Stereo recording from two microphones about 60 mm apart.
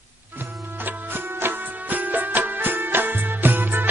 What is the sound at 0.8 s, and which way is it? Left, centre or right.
Music, right.